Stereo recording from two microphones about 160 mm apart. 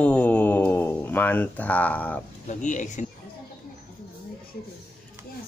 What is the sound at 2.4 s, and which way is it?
Speech, 50° left (ahead or behind).